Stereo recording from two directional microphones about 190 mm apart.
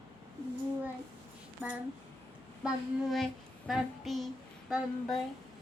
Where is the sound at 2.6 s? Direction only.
Centre (ahead or behind).